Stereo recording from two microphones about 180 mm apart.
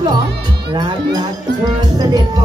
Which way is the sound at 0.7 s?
25° right (ahead or behind).